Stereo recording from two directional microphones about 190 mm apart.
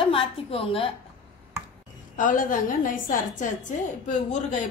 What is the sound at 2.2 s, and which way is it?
A woman's voice, 45° left (ahead or behind).